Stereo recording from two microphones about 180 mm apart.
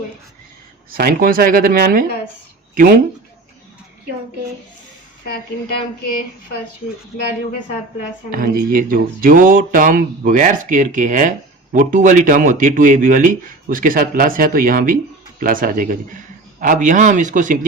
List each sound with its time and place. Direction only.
0.9 s speech: 55° right (ahead or behind)
8.3 s speech: 50° right (ahead or behind)